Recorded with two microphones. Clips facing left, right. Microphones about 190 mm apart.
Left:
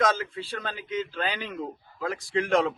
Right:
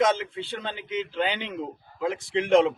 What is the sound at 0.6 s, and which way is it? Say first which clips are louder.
Speech: left 1 dB; 25° right (ahead or behind).